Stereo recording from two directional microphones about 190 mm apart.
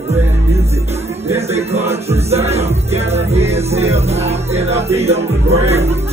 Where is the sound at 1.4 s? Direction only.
35° right (ahead or behind).